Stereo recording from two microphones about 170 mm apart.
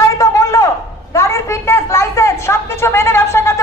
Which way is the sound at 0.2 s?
20° left (ahead or behind).